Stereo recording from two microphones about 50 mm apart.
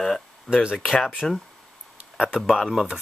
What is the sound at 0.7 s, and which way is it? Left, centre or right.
Speech, centre.